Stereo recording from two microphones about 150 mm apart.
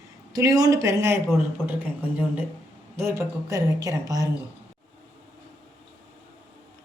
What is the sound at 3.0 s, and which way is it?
A woman's voice, 20° right (ahead or behind).